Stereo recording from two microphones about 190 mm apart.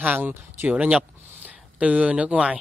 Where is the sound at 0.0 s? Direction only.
10° right (ahead or behind).